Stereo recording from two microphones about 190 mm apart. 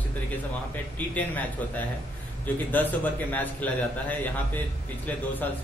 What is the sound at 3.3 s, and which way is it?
A man's voice, 10° left (ahead or behind).